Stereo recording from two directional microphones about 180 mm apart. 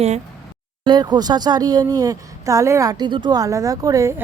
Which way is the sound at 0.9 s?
25° right (ahead or behind).